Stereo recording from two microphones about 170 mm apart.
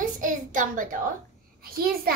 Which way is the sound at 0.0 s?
50° right (ahead or behind).